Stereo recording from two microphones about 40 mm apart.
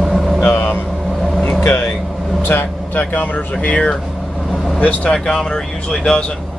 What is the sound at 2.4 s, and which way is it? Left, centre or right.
Speech, left.